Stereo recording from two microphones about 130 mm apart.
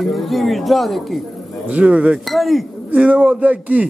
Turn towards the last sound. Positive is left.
turn(degrees=-10)  # may be behind; listen again after turning